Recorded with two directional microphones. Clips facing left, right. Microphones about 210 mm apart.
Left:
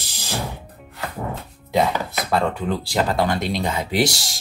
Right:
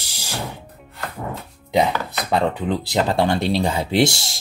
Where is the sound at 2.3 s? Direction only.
15° right (ahead or behind).